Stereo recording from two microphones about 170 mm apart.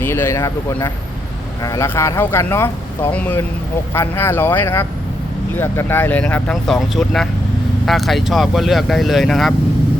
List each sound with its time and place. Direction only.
0.0 s speech: 15° left (ahead or behind)